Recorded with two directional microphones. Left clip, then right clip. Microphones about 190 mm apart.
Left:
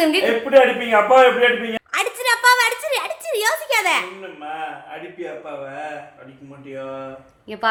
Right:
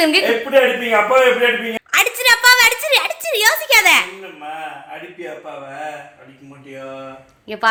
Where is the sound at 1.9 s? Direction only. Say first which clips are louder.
Right 7 dB; 5° right (ahead or behind).